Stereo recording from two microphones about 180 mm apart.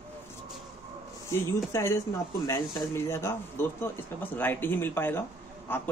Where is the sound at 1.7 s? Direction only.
15° left (ahead or behind).